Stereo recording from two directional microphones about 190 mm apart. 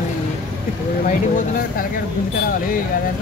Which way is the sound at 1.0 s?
40° left (ahead or behind).